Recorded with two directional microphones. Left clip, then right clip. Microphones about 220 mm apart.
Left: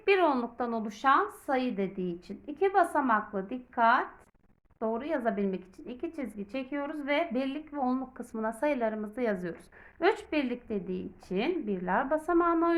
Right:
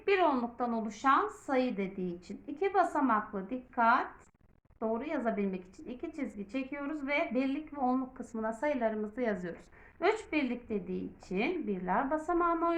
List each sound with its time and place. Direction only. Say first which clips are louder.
0.0 s a woman's voice: left 3 dB; 45° left (ahead or behind)